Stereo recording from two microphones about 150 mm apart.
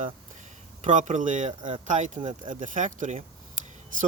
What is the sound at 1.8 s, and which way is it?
Speech, 55° right (ahead or behind).